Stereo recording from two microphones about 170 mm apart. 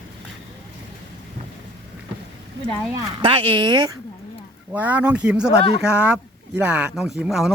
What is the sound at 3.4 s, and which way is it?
Speech, 30° right (ahead or behind).